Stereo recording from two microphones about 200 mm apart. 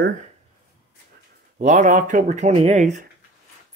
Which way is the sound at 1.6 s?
35° right (ahead or behind).